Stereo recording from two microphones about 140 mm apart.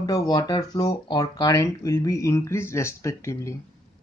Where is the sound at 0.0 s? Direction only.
25° left (ahead or behind).